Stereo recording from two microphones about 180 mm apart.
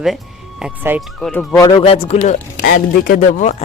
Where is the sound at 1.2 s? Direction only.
5° left (ahead or behind).